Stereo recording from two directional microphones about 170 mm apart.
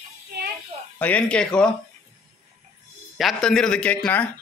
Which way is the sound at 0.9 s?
10° left (ahead or behind).